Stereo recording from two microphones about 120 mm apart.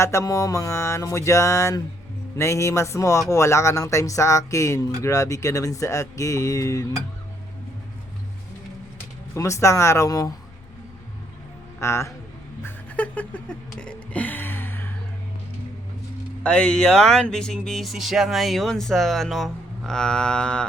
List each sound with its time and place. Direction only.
0.0 s speech: 25° left (ahead or behind)
9.3 s speech: 25° left (ahead or behind)
11.8 s speech: 25° left (ahead or behind)
12.6 s a sound: 10° left (ahead or behind)
16.4 s speech: 10° left (ahead or behind)